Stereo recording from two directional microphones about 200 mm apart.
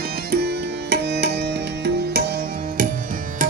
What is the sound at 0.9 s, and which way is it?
Music, 55° right (ahead or behind).